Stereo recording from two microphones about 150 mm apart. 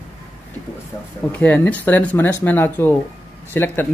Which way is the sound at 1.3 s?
10° left (ahead or behind).